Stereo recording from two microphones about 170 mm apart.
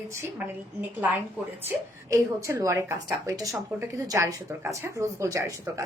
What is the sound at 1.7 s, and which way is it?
Speech, 15° right (ahead or behind).